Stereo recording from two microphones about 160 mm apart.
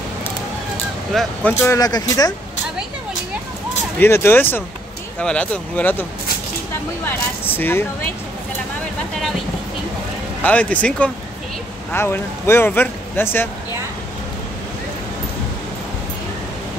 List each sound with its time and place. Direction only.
1.1 s speech: centre (ahead or behind)
1.5 s speech: 15° left (ahead or behind)
4.0 s speech: 15° left (ahead or behind)
7.1 s speech: 10° left (ahead or behind)
10.4 s speech: 10° left (ahead or behind)